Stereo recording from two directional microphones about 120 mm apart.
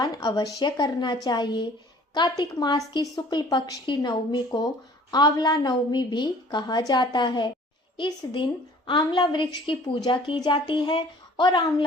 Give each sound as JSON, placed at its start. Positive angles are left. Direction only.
{"t": 0.0, "sound": "a woman's voice", "side_deg": 30}